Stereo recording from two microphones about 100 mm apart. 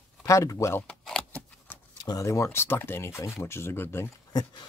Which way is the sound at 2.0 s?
35° left (ahead or behind).